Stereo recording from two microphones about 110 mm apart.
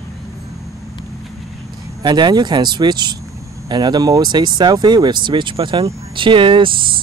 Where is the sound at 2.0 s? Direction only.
40° right (ahead or behind).